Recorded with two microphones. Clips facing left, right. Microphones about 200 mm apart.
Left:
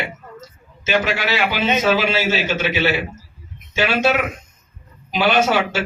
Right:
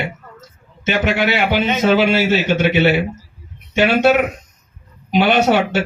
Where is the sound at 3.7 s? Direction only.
60° right (ahead or behind).